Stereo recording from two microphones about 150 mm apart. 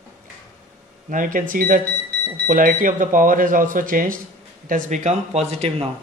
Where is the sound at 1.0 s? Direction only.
60° right (ahead or behind); by 5.9 s 45° right (ahead or behind).